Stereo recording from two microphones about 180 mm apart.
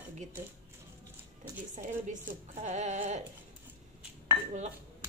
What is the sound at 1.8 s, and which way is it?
A woman's voice, 45° right (ahead or behind).